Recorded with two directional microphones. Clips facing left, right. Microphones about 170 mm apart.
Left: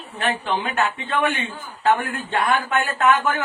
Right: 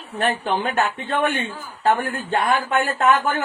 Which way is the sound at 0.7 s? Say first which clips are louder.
Right 1 dB; 40° right (ahead or behind).